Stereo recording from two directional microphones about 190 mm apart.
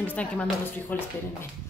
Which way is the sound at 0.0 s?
10° left (ahead or behind).